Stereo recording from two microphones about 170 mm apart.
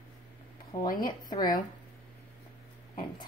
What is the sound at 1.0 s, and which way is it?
Speech, 25° left (ahead or behind).